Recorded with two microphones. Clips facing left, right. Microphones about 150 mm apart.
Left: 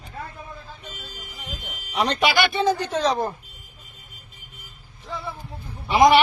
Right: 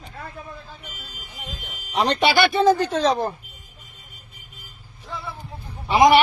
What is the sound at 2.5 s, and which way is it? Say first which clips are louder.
Speech: right 5 dB; 50° right (ahead or behind).